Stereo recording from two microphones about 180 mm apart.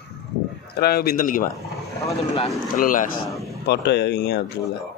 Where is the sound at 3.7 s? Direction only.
70° left (ahead or behind).